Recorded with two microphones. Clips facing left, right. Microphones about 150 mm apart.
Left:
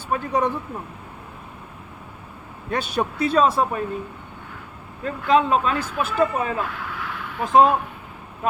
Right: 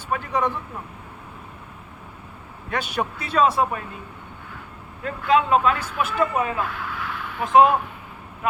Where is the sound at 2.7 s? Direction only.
35° left (ahead or behind).